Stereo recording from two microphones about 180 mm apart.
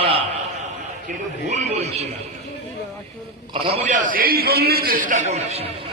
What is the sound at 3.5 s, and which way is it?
A man's voice, 35° right (ahead or behind).